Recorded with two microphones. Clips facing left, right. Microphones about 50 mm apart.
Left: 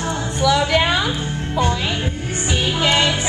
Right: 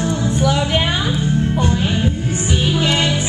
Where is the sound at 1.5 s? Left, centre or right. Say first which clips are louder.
Right 1 dB; left.